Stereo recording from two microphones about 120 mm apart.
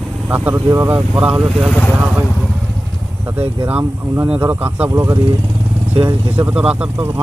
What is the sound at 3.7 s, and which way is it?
Speech, 20° right (ahead or behind).